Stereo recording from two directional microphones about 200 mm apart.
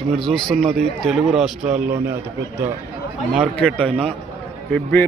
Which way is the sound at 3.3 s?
5° right (ahead or behind).